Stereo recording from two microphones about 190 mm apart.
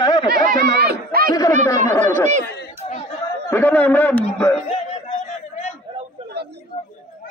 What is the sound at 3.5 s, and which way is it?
Speech, 10° left (ahead or behind).